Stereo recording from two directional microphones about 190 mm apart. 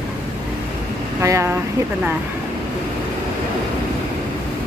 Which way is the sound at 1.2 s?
15° right (ahead or behind).